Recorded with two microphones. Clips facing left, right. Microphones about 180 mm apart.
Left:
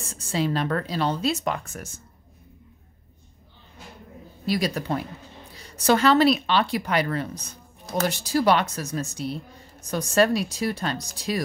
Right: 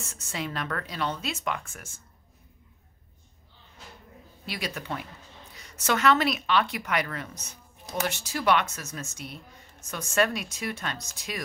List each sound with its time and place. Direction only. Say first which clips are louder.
0.0 s speech: left 9 dB; 35° left (ahead or behind)
4.5 s speech: left 9 dB; 35° left (ahead or behind)